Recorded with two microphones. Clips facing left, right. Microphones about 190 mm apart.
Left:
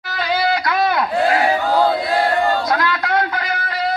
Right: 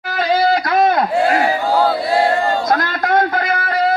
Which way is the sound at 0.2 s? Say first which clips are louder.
Right 4 dB; 35° right (ahead or behind).